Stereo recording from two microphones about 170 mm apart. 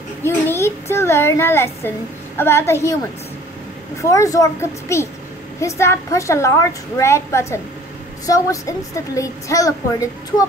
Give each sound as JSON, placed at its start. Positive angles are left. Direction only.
{"t": 0.2, "sound": "a child's voice", "side_deg": 15}
{"t": 4.0, "sound": "a woman's voice", "side_deg": 20}